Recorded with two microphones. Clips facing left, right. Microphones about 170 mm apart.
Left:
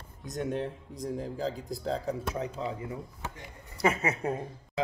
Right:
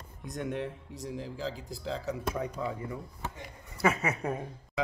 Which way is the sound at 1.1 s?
45° left (ahead or behind).